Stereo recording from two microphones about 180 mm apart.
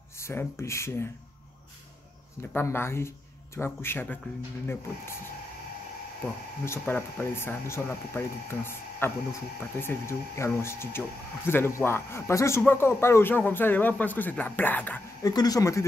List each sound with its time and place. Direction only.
0.2 s speech: 15° left (ahead or behind)
2.5 s speech: 15° left (ahead or behind)
6.6 s speech: 10° left (ahead or behind)
15.3 s speech: 20° left (ahead or behind)